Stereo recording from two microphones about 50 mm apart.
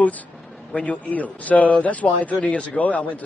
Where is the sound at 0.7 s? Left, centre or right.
Left.